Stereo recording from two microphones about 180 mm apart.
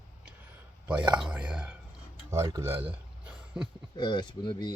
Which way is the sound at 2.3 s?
15° right (ahead or behind).